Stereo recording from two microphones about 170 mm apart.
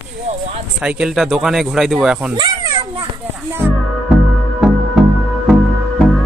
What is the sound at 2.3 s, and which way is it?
Children playing, 25° right (ahead or behind).